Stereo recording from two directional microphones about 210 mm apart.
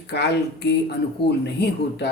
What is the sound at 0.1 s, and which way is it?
Speech, 55° left (ahead or behind).